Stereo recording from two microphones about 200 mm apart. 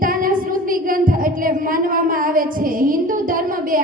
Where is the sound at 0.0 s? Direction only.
45° right (ahead or behind).